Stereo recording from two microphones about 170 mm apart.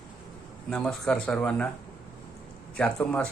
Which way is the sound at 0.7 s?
5° left (ahead or behind).